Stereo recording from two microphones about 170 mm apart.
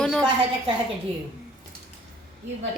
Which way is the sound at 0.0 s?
5° left (ahead or behind).